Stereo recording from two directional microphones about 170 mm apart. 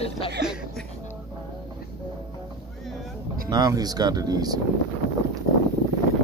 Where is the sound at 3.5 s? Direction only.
25° right (ahead or behind).